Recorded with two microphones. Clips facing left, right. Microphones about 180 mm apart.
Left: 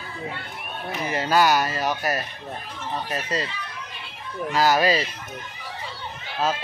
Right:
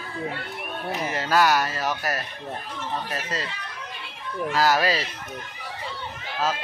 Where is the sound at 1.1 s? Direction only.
Centre (ahead or behind).